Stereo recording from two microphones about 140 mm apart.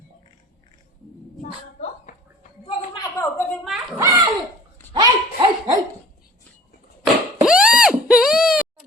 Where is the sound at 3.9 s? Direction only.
30° right (ahead or behind).